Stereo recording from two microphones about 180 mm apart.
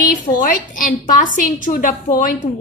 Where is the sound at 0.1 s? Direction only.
50° left (ahead or behind).